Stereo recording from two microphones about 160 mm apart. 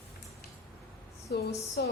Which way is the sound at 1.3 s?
90° left.